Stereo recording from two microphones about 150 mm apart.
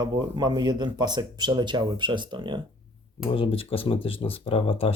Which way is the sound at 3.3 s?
35° left (ahead or behind).